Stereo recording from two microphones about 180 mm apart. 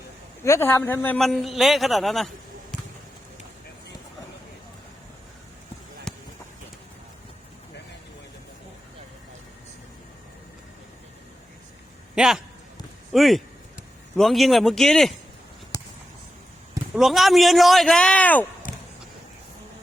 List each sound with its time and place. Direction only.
0.4 s a man's voice: 15° left (ahead or behind)
6.1 s a sound: 5° left (ahead or behind)
12.1 s a man's voice: 5° right (ahead or behind)
15.7 s a sound: 20° left (ahead or behind)
16.9 s a man's voice: centre (ahead or behind)
18.7 s basketball bounce: 45° left (ahead or behind)